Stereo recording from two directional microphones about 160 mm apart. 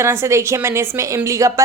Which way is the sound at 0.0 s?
15° right (ahead or behind).